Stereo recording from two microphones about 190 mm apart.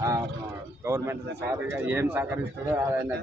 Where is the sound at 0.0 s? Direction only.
15° right (ahead or behind).